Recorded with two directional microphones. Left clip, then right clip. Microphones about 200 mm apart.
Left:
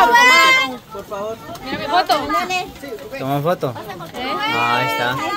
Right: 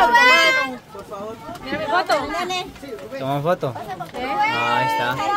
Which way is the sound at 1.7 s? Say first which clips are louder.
Left 3 dB; 5° right (ahead or behind).